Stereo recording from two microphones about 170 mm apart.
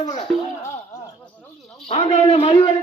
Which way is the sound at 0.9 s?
20° left (ahead or behind).